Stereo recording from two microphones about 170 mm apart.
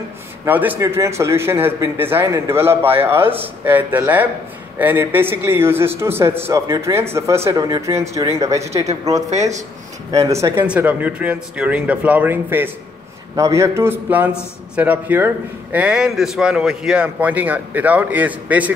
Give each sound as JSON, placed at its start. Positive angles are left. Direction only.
{"t": 0.5, "sound": "a man's voice", "side_deg": -10}
{"t": 9.3, "sound": "speech", "side_deg": -40}
{"t": 10.1, "sound": "a man's voice", "side_deg": -20}